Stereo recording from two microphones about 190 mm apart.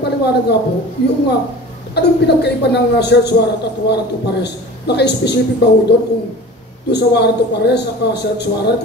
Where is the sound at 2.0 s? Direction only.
60° left (ahead or behind).